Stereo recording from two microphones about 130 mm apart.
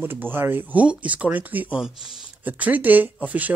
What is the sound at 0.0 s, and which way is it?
Speech, 15° right (ahead or behind).